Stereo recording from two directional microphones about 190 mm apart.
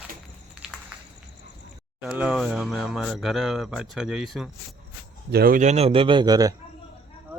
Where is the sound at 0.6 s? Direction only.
5° right (ahead or behind).